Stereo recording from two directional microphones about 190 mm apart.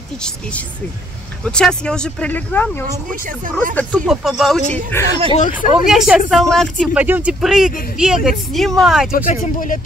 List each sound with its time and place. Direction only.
0.2 s speech: 5° left (ahead or behind)
3.1 s speech: 45° right (ahead or behind)
3.7 s speech: 5° left (ahead or behind)
4.9 s speech: 10° left (ahead or behind)
5.3 s speech: 40° left (ahead or behind)
5.9 s speech: centre (ahead or behind)
9.1 s speech: 45° left (ahead or behind)